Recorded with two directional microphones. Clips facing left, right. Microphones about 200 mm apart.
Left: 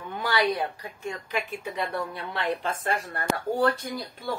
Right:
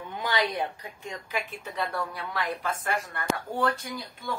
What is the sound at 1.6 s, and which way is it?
Speech, 20° left (ahead or behind).